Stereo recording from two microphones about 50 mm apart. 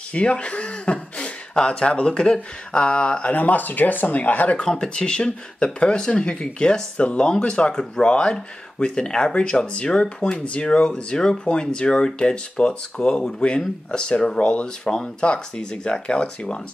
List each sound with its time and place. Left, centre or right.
0.1 s speech: left
4.6 s speech: centre